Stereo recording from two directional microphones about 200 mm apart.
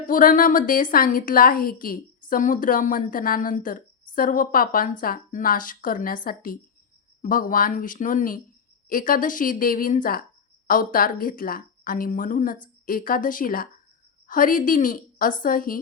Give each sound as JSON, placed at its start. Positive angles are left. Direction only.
{"t": 0.1, "sound": "a woman's voice", "side_deg": 45}